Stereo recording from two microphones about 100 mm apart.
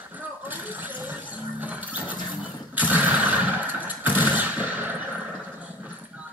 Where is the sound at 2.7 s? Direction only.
15° right (ahead or behind).